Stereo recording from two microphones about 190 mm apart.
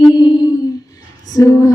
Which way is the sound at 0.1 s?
25° left (ahead or behind).